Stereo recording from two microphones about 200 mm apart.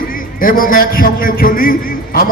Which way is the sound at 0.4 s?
45° left (ahead or behind).